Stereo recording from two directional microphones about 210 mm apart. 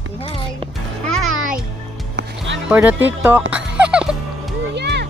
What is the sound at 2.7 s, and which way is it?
Speech, 10° right (ahead or behind).